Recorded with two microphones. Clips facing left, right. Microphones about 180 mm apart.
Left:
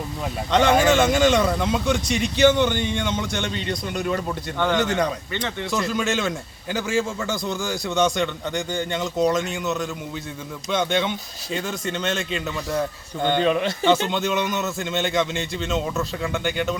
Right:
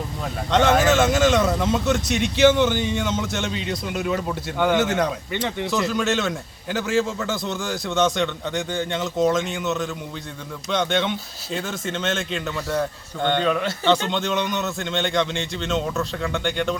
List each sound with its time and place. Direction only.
0.5 s speech: centre (ahead or behind)
5.3 s speech: 15° right (ahead or behind)
5.7 s speech: centre (ahead or behind)
13.4 s speech: 20° left (ahead or behind)
14.1 s speech: 5° left (ahead or behind)